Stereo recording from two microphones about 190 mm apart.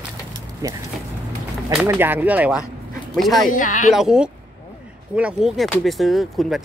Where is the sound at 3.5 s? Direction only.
45° left (ahead or behind).